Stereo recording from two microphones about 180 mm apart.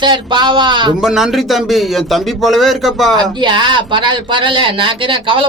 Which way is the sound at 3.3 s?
25° right (ahead or behind).